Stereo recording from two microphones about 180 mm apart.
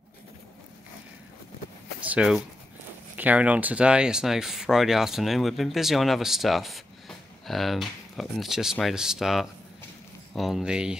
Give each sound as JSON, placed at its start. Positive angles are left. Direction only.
{"t": 2.0, "sound": "speech", "side_deg": -5}